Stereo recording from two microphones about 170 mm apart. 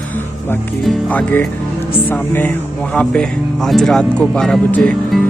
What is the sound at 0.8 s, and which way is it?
Speech, 10° left (ahead or behind).